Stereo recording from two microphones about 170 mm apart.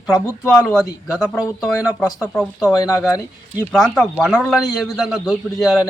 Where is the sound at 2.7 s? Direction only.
20° left (ahead or behind).